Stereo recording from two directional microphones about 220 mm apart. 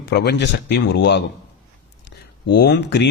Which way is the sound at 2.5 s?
50° left (ahead or behind).